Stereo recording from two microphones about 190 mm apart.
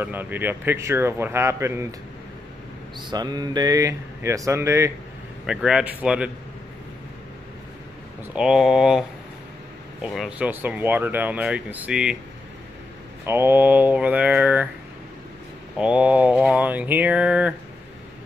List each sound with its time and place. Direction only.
0.0 s speech: 10° right (ahead or behind)
3.0 s speech: 20° right (ahead or behind)
5.5 s speech: 5° right (ahead or behind)
8.3 s speech: 5° right (ahead or behind)
10.0 s speech: centre (ahead or behind)
13.2 s speech: 10° right (ahead or behind)
15.8 s speech: 5° right (ahead or behind)